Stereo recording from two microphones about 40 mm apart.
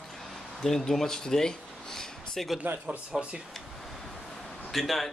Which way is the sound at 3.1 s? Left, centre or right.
Right.